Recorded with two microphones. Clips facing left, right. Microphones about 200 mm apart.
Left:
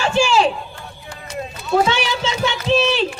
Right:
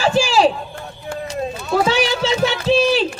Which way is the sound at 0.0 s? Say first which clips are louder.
Right 1 dB; 35° right (ahead or behind).